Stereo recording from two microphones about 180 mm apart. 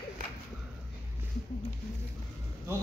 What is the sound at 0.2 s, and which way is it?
Whip, 50° right (ahead or behind).